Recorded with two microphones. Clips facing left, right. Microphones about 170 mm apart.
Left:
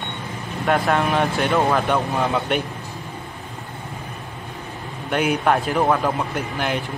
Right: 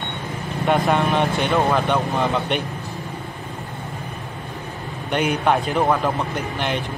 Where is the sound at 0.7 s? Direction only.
Centre (ahead or behind).